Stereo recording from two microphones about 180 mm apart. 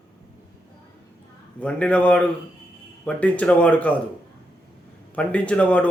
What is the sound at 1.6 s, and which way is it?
A man's voice, 5° left (ahead or behind).